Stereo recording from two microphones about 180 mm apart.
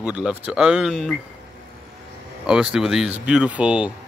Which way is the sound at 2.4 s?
5° right (ahead or behind).